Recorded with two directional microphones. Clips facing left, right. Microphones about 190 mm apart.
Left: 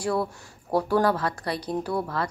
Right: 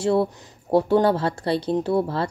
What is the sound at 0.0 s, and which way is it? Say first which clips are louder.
Speech: right 6 dB; 25° right (ahead or behind).